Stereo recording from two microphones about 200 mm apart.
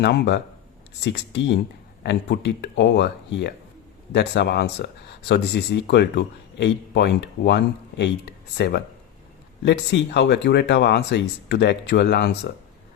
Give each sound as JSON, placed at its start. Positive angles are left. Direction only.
{"t": 0.0, "sound": "speech", "side_deg": 55}